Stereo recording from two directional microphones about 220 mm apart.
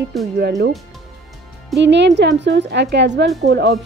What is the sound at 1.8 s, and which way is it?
Speech, 55° right (ahead or behind).